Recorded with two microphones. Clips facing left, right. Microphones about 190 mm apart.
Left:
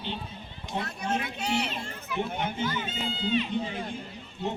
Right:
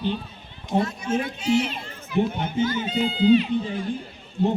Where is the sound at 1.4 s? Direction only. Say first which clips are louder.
Right 11 dB; 65° left (ahead or behind).